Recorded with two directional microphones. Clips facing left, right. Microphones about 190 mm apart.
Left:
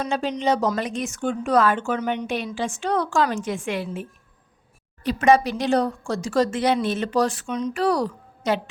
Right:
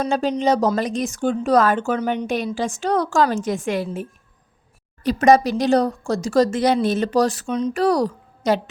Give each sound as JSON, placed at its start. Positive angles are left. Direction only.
{"t": 0.0, "sound": "speech", "side_deg": -40}
{"t": 5.0, "sound": "speech", "side_deg": -40}